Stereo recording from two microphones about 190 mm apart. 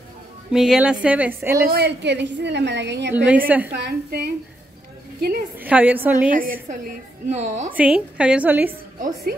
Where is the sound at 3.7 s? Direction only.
55° right (ahead or behind).